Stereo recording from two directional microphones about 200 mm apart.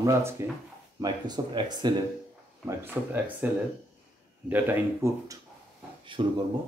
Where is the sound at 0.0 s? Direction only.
15° right (ahead or behind).